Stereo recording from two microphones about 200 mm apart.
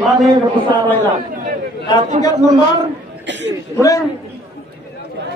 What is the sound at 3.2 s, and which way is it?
Chuckle, 60° right (ahead or behind).